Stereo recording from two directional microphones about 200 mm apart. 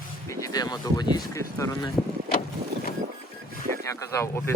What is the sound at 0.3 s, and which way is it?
Speech, 15° left (ahead or behind).